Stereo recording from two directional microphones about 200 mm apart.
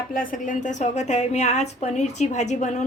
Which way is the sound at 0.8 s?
35° left (ahead or behind).